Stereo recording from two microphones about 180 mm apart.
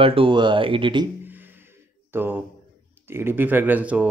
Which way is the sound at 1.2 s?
10° right (ahead or behind).